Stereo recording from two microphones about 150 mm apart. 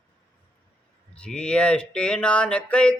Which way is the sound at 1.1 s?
5° left (ahead or behind).